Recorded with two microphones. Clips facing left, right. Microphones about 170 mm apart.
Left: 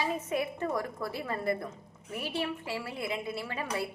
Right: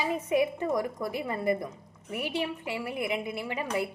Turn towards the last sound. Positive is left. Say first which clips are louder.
# right 3 dB
turn(degrees=-15)  # may be behind; listen again after turning